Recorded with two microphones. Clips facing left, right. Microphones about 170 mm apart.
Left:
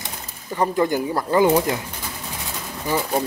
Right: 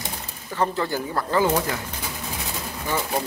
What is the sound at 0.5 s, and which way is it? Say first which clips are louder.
Speech: left 4 dB; 15° left (ahead or behind).